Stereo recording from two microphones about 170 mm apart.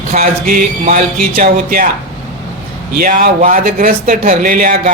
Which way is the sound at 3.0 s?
55° right (ahead or behind).